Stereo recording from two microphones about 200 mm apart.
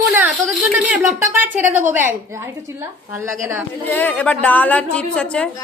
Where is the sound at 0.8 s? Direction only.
5° right (ahead or behind).